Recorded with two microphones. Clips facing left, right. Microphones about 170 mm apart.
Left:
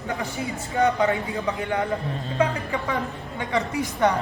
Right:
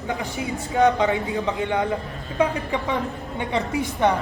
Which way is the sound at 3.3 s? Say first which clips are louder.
Right 1 dB; 25° right (ahead or behind).